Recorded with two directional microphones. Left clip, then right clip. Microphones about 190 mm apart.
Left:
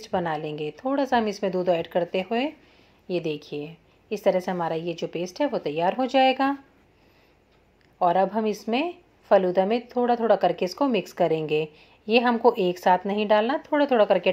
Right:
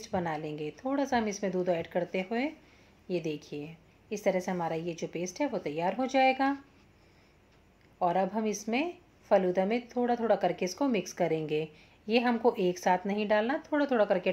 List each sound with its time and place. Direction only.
0.0 s a woman's voice: 25° left (ahead or behind)
8.0 s a woman's voice: 25° left (ahead or behind)